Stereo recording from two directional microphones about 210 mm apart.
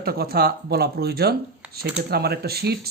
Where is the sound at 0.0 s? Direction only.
45° right (ahead or behind).